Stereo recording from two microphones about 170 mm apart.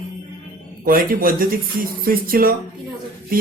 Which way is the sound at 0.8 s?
55° right (ahead or behind).